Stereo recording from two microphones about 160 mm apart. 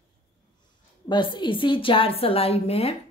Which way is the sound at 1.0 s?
30° left (ahead or behind).